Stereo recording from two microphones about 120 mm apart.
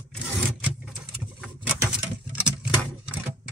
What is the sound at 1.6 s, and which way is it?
Patter, 10° right (ahead or behind).